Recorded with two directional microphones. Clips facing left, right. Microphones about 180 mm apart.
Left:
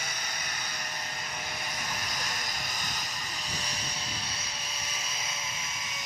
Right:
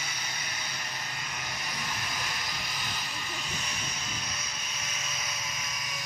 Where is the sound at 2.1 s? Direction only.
45° left (ahead or behind).